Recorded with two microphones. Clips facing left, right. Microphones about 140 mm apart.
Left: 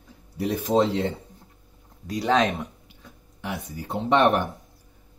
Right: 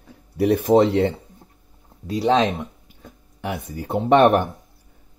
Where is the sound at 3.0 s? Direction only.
50° right (ahead or behind).